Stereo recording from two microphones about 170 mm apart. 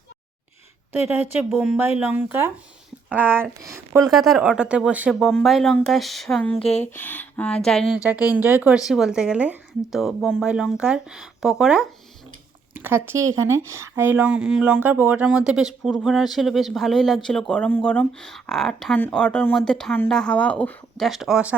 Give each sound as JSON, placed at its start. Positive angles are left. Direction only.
{"t": 0.9, "sound": "speech", "side_deg": -10}
{"t": 4.1, "sound": "speech", "side_deg": 0}
{"t": 6.6, "sound": "speech", "side_deg": 35}
{"t": 6.9, "sound": "speech", "side_deg": 10}
{"t": 8.3, "sound": "speech", "side_deg": -10}